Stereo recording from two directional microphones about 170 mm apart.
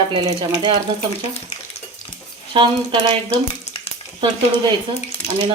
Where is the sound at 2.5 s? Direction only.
30° right (ahead or behind).